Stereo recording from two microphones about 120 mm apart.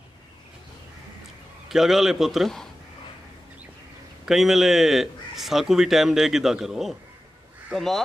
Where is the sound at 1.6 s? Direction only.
Centre (ahead or behind).